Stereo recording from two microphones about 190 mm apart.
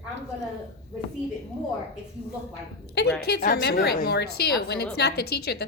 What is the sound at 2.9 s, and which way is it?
A woman's voice, 55° left (ahead or behind).